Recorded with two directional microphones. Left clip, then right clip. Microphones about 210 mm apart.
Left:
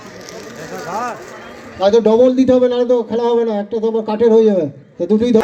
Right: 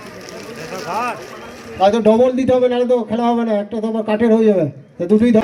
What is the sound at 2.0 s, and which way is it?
Speech, 45° left (ahead or behind).